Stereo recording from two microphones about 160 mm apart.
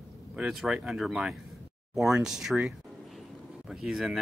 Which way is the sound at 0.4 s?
Centre (ahead or behind).